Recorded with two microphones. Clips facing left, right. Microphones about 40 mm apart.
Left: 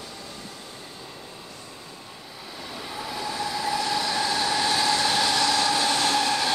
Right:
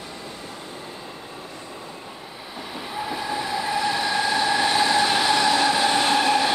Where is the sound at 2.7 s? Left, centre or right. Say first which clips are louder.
Right 4 dB; centre.